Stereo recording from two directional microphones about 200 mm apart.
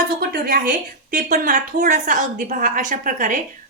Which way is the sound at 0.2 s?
45° right (ahead or behind).